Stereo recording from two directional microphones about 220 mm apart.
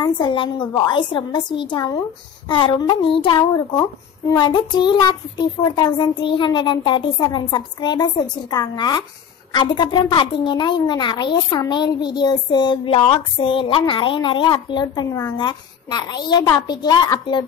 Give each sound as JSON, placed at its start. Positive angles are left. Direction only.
{"t": 0.0, "sound": "a woman's voice", "side_deg": 20}